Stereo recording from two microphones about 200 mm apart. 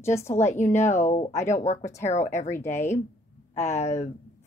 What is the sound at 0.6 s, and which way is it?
Speech, 35° left (ahead or behind).